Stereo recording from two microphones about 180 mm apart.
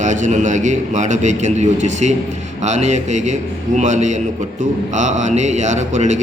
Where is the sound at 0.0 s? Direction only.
45° right (ahead or behind).